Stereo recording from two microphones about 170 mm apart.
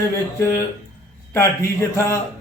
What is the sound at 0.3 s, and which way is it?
A man's voice, 15° left (ahead or behind).